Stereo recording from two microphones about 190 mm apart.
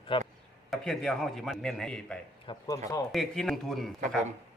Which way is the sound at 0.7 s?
Centre (ahead or behind).